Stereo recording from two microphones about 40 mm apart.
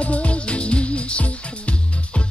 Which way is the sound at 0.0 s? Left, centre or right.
Left.